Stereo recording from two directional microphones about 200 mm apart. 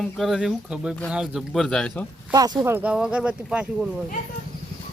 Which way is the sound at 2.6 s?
10° right (ahead or behind).